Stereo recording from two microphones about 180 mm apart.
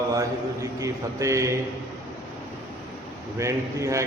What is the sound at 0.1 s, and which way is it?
Speech, 20° right (ahead or behind).